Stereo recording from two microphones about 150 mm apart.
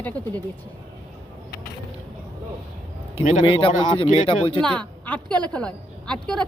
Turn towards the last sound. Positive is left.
turn(degrees=5)  # may be behind; listen again after turning